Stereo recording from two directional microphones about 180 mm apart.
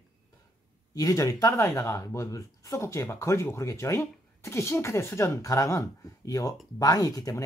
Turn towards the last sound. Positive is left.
turn(degrees=20)  # may be behind; listen again after turning